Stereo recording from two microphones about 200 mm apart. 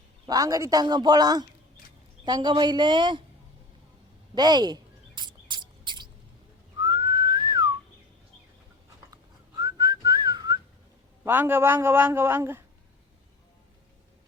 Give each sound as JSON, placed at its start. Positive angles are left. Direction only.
{"t": 0.3, "sound": "speech", "side_deg": -20}
{"t": 4.4, "sound": "cricket", "side_deg": -20}
{"t": 6.7, "sound": "whistling", "side_deg": -20}
{"t": 9.6, "sound": "whistling", "side_deg": -20}
{"t": 11.3, "sound": "speech", "side_deg": -10}